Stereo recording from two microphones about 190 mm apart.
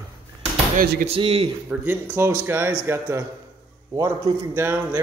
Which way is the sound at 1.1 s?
30° right (ahead or behind).